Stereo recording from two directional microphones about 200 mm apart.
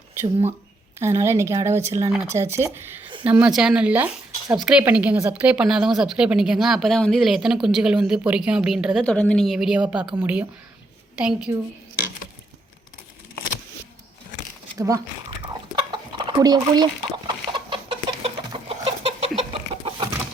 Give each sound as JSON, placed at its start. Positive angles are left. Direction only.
{"t": 0.9, "sound": "a woman's voice", "side_deg": -15}
{"t": 14.8, "sound": "speech", "side_deg": -15}
{"t": 15.9, "sound": "chicken", "side_deg": -25}